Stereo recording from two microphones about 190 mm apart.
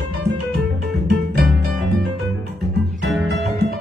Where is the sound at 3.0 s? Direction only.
60° right (ahead or behind).